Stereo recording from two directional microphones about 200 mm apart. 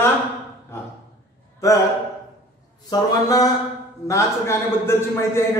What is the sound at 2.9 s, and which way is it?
A man's voice, 20° left (ahead or behind).